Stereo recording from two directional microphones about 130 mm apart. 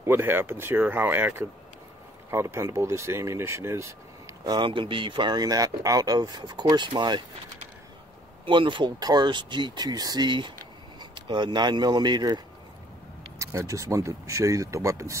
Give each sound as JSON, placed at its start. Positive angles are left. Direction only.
{"t": 0.0, "sound": "speech", "side_deg": -15}
{"t": 4.5, "sound": "speech", "side_deg": -35}
{"t": 8.5, "sound": "speech", "side_deg": -40}
{"t": 13.4, "sound": "speech", "side_deg": -20}